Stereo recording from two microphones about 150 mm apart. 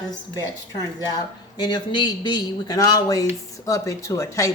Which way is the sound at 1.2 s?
25° left (ahead or behind).